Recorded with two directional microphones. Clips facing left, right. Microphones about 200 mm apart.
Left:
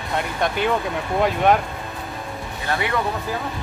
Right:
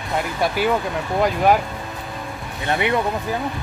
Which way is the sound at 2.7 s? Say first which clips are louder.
Right 4 dB; 20° right (ahead or behind).